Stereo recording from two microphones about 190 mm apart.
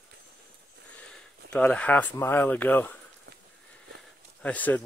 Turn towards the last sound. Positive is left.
turn(degrees=10)  # may be behind; listen again after turning